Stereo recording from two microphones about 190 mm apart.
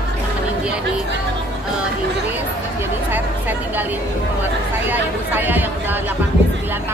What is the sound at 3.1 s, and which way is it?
Chatter, 10° right (ahead or behind).